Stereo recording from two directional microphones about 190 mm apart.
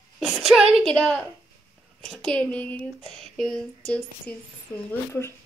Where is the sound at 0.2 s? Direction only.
Centre (ahead or behind).